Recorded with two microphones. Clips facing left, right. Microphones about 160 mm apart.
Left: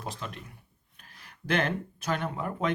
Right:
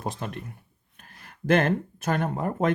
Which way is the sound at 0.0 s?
50° right (ahead or behind).